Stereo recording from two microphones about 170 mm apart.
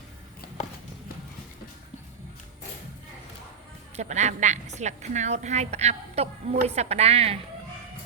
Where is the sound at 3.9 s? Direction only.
45° right (ahead or behind).